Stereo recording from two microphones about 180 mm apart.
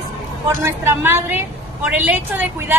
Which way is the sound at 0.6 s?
15° right (ahead or behind).